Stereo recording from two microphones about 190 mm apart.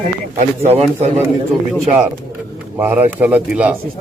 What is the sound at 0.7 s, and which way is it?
Speech, 35° right (ahead or behind).